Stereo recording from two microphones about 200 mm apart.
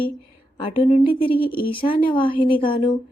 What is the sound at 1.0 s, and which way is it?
Speech, 25° left (ahead or behind).